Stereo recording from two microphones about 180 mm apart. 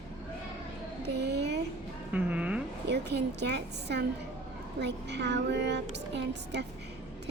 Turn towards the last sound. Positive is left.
turn(degrees=-70)  # may be behind; listen again after turning